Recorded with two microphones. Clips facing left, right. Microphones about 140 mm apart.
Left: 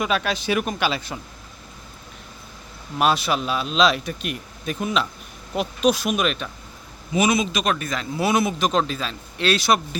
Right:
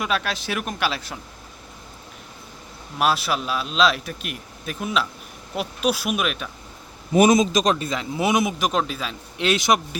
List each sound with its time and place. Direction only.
0.0 s speech: centre (ahead or behind)
3.0 s speech: centre (ahead or behind)
7.1 s a man's voice: 45° right (ahead or behind); by 9.8 s 20° right (ahead or behind)